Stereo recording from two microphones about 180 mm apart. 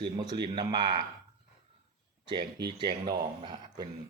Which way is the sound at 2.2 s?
25° right (ahead or behind).